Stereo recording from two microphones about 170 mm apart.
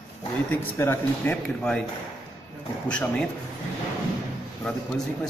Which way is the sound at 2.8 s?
5° left (ahead or behind).